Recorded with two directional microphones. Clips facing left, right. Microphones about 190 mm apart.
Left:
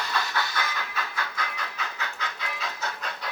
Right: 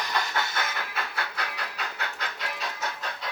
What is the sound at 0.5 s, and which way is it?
Vehicle, 55° right (ahead or behind).